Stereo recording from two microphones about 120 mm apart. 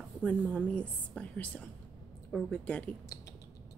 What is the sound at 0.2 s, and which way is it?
A woman's voice, 10° left (ahead or behind).